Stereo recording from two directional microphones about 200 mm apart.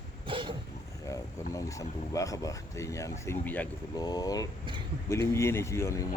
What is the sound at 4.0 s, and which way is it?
Speech, 20° left (ahead or behind).